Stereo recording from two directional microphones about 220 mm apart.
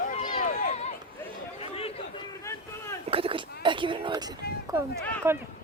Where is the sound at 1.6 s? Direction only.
25° left (ahead or behind).